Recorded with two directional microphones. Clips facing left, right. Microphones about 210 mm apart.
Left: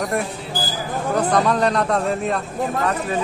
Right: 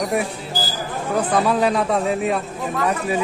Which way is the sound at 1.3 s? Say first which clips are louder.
Right 1 dB; 5° right (ahead or behind).